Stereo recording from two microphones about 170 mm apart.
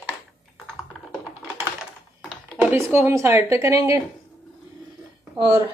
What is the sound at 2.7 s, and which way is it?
Speech, 15° right (ahead or behind).